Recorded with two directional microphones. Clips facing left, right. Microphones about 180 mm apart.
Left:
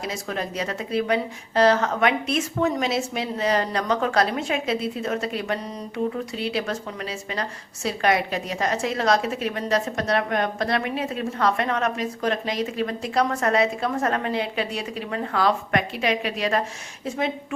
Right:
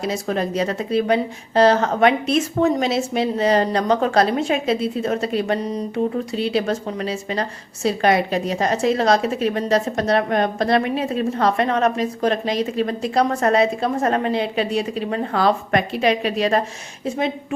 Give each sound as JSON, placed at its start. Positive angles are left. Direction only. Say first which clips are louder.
{"t": 0.0, "sound": "a woman's voice", "louder": "right 7 dB", "side_deg": -30}